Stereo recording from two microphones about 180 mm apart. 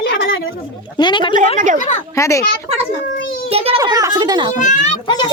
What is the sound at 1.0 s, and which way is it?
Speech, 25° left (ahead or behind).